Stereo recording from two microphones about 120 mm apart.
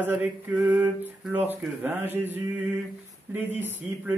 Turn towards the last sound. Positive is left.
turn(degrees=-15)  # may be behind; listen again after turning